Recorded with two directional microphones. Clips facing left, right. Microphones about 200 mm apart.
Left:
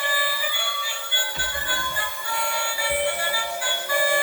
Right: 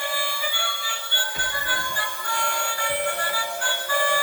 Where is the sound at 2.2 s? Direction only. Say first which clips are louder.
Even; 5° left (ahead or behind).